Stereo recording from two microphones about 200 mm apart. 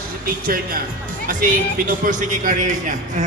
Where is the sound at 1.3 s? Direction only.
40° right (ahead or behind).